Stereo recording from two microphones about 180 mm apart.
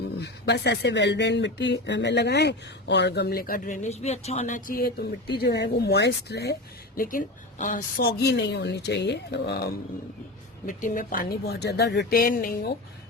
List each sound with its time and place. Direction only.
0.2 s speech: 70° left (ahead or behind); by 5.0 s 55° left (ahead or behind)
5.4 s a woman's voice: 70° left (ahead or behind)
10.7 s speech: 45° left (ahead or behind)